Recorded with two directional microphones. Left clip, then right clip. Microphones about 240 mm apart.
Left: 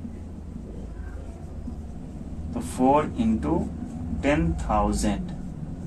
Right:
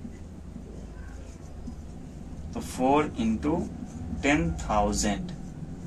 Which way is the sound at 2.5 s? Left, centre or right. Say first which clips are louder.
Left 3 dB; centre.